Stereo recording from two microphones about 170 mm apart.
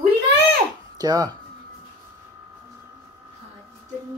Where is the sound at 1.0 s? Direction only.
20° right (ahead or behind).